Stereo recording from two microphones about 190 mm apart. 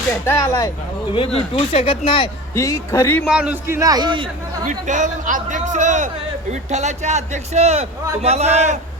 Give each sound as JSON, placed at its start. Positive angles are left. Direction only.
{"t": 0.1, "sound": "a man's voice", "side_deg": 15}
{"t": 1.4, "sound": "speech", "side_deg": 30}
{"t": 2.6, "sound": "a man's voice", "side_deg": 15}
{"t": 3.2, "sound": "a man's voice", "side_deg": -5}
{"t": 4.6, "sound": "speech", "side_deg": -40}